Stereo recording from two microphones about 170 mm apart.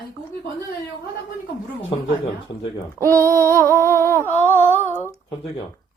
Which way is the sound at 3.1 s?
15° left (ahead or behind).